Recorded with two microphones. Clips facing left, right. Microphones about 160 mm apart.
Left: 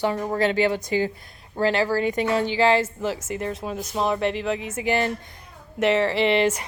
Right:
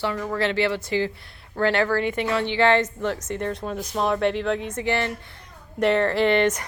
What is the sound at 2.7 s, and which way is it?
Speech, 5° left (ahead or behind).